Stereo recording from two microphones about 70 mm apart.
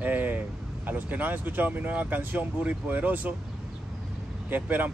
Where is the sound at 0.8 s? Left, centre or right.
Right.